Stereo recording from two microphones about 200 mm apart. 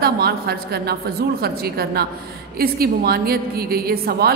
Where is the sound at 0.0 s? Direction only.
50° right (ahead or behind).